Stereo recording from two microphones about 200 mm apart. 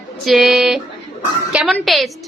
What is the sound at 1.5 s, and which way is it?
Speech, 5° right (ahead or behind).